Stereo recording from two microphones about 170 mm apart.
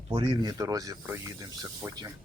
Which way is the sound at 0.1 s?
30° right (ahead or behind).